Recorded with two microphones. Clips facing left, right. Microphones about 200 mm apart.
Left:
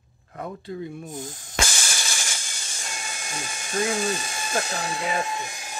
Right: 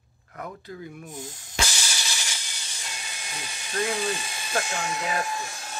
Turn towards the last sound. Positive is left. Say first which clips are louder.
# left 2 dB
turn(degrees=25)  # may be behind; listen again after turning